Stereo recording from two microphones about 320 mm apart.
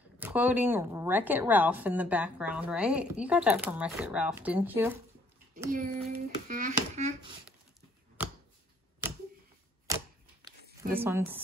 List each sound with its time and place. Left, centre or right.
0.2 s a woman's voice: centre
5.7 s a child's voice: right
11.0 s speech: centre